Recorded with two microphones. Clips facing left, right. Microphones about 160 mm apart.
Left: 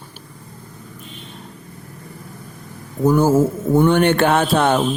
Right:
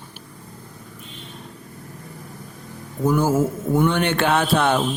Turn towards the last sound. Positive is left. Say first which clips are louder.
# left 3 dB
turn(degrees=45)  # may be behind; listen again after turning